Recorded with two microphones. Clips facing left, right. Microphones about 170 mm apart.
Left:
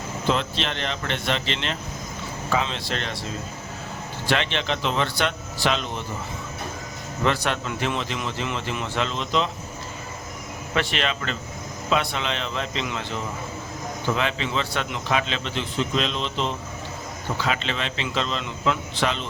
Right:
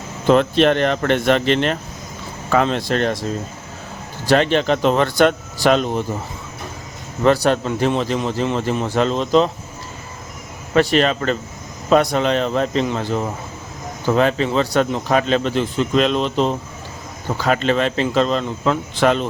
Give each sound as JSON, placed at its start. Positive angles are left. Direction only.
{"t": 0.3, "sound": "speech", "side_deg": -55}
{"t": 4.3, "sound": "speech", "side_deg": -45}
{"t": 7.3, "sound": "a man's voice", "side_deg": -35}
{"t": 10.8, "sound": "a man's voice", "side_deg": -40}